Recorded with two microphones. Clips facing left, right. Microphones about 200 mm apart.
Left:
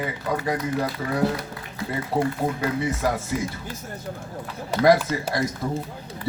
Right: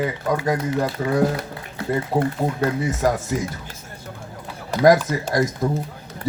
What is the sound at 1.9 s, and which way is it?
Speech, 50° right (ahead or behind).